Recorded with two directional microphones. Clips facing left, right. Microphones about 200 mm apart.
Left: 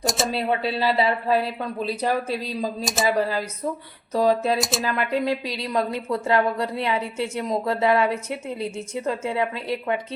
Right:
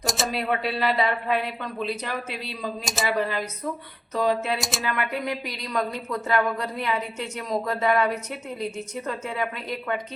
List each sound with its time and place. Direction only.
0.0 s a sound: centre (ahead or behind)
0.3 s a woman's voice: 30° left (ahead or behind)
2.8 s speech: centre (ahead or behind)
3.1 s a woman's voice: 35° left (ahead or behind)